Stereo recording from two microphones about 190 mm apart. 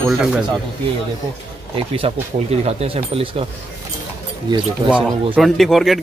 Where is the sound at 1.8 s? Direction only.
30° right (ahead or behind).